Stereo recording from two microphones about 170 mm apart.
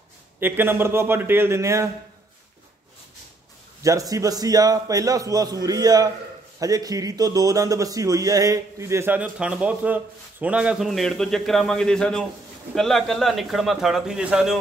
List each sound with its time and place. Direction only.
0.4 s speech: 10° right (ahead or behind)
3.8 s a man's voice: 20° right (ahead or behind); by 14.6 s 5° right (ahead or behind)